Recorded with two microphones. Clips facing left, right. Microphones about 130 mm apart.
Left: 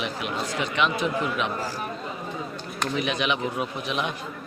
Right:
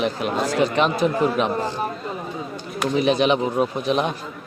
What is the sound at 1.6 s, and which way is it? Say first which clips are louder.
Speech: right 6 dB; 25° right (ahead or behind).